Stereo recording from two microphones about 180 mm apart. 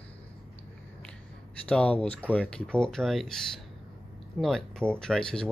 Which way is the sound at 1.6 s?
5° left (ahead or behind).